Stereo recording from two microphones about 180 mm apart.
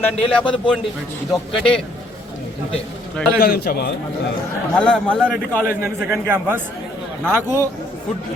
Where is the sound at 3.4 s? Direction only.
55° left (ahead or behind).